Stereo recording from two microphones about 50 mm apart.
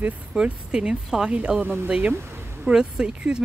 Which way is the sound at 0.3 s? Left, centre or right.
Right.